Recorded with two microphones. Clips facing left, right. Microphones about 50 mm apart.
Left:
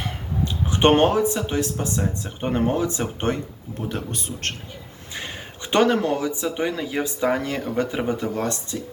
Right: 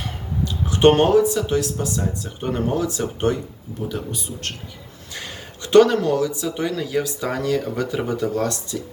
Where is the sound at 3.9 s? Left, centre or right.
Left.